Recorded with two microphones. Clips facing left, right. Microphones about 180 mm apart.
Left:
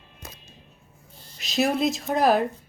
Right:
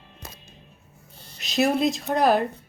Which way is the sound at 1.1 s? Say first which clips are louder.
Right 2 dB; 65° right (ahead or behind).